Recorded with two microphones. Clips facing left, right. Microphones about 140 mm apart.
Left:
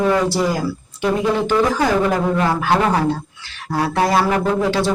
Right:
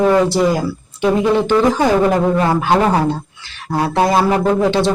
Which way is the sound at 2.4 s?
20° right (ahead or behind).